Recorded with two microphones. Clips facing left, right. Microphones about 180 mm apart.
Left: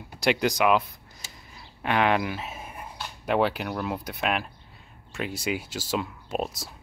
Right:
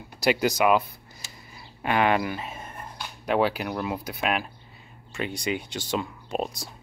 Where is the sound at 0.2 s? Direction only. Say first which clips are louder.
Right 1 dB; 5° right (ahead or behind).